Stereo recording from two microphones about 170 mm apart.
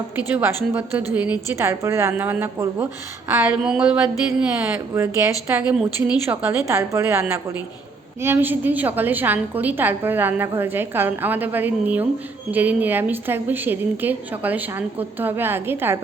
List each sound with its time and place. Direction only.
0.2 s a woman's voice: 10° right (ahead or behind)
3.4 s a woman's voice: 5° right (ahead or behind)